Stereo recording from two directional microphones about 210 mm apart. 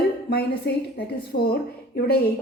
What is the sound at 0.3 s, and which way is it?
A woman's voice, 50° left (ahead or behind).